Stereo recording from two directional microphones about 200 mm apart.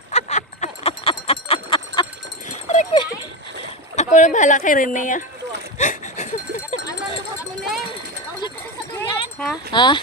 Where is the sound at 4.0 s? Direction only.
35° left (ahead or behind).